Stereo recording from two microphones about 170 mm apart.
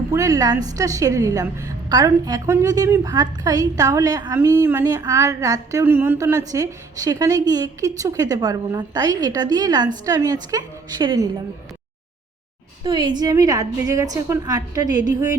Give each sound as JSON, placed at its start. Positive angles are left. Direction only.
{"t": 0.1, "sound": "a woman's voice", "side_deg": -20}
{"t": 12.8, "sound": "a woman's voice", "side_deg": -25}